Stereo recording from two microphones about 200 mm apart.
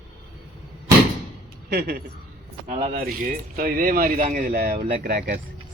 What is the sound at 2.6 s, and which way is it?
Speech, 35° right (ahead or behind).